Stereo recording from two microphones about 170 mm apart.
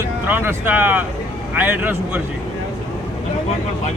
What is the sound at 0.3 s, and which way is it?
Speech, 10° right (ahead or behind).